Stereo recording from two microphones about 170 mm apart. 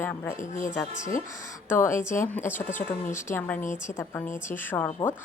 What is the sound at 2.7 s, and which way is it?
Speech, 50° left (ahead or behind).